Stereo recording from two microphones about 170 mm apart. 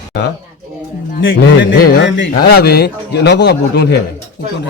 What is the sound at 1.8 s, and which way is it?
Speech, 80° left.